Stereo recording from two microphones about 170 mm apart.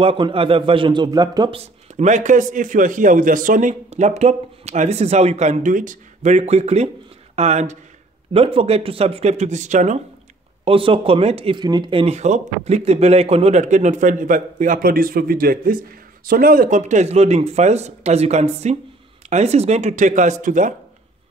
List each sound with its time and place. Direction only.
0.0 s speech: 30° right (ahead or behind)
1.6 s a man's voice: 40° right (ahead or behind)
10.6 s a man's voice: 35° right (ahead or behind); by 20.7 s 50° right (ahead or behind)